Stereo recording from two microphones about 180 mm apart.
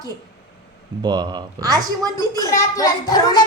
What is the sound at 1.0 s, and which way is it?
Speech, 25° right (ahead or behind).